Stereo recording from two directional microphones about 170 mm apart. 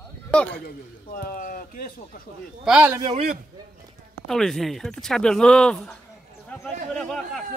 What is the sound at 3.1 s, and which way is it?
Speech, 45° right (ahead or behind).